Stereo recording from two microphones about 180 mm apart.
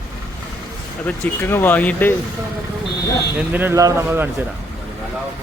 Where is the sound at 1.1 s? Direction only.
10° left (ahead or behind).